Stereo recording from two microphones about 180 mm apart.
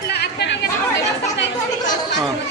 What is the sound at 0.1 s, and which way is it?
Chatter, 70° left (ahead or behind).